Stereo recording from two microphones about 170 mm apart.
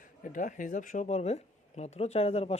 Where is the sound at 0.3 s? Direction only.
50° left (ahead or behind).